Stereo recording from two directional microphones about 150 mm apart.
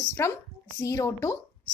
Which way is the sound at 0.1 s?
15° left (ahead or behind).